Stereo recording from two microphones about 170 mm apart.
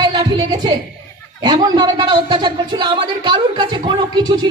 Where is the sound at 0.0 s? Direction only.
25° right (ahead or behind).